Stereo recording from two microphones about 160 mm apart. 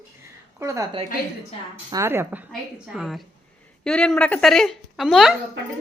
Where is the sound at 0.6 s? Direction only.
20° right (ahead or behind).